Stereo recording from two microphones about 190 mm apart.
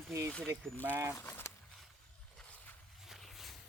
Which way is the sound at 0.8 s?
10° right (ahead or behind).